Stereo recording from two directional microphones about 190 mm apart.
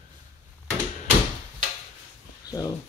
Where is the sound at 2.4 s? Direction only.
20° left (ahead or behind).